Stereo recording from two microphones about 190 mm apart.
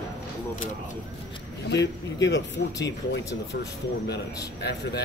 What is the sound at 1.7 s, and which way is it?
Speech, 65° left (ahead or behind).